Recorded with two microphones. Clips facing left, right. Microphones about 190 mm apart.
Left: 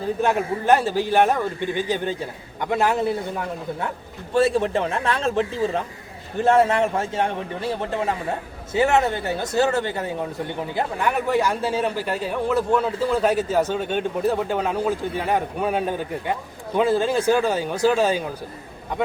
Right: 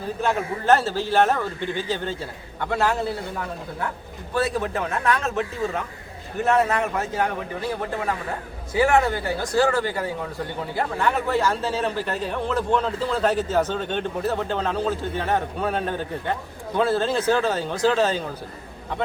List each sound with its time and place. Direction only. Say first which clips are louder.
0.2 s a man's voice: left 1 dB; 15° left (ahead or behind)